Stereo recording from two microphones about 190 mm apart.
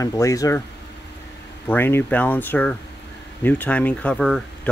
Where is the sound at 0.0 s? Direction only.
15° left (ahead or behind).